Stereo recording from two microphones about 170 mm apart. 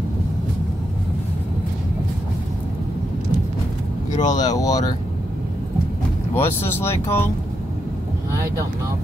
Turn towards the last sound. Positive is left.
turn(degrees=15)  # may be behind; listen again after turning